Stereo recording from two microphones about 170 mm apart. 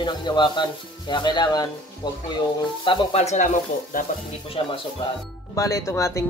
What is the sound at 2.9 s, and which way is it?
Speech, 40° left (ahead or behind).